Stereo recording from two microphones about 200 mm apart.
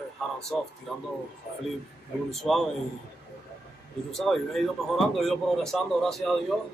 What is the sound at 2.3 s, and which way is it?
Speech, centre (ahead or behind).